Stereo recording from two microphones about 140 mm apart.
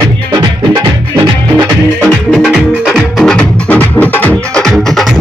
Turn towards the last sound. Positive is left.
turn(degrees=5)  # may be behind; listen again after turning